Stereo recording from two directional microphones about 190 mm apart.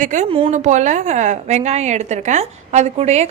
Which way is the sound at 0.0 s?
40° right (ahead or behind).